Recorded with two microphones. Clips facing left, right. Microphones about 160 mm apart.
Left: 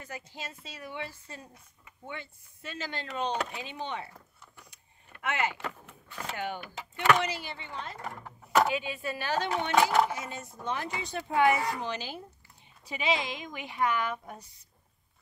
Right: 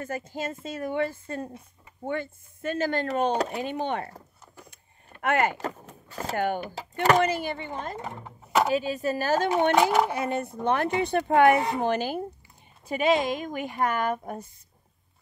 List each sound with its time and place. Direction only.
0.0 s speech: 50° right (ahead or behind)
5.2 s speech: 50° right (ahead or behind)
8.0 s speech: 20° right (ahead or behind)
8.6 s speech: 40° right (ahead or behind)
10.0 s speech: 60° right (ahead or behind)